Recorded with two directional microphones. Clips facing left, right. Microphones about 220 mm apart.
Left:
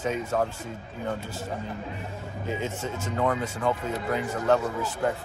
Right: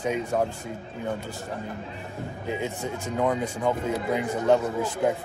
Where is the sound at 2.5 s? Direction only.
15° right (ahead or behind).